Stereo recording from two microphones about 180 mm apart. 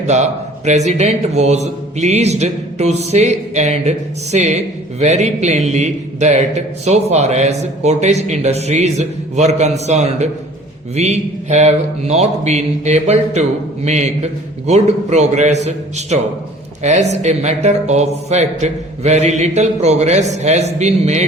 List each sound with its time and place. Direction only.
0.1 s a man's voice: 40° right (ahead or behind)